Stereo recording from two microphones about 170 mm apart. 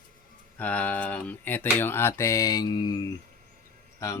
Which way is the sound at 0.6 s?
10° left (ahead or behind).